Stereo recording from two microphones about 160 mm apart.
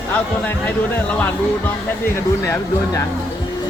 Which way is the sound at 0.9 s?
10° left (ahead or behind).